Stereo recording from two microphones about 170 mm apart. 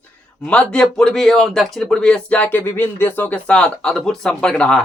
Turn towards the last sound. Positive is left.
turn(degrees=5)  # may be behind; listen again after turning